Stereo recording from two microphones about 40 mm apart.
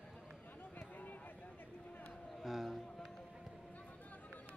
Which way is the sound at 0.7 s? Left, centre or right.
Left.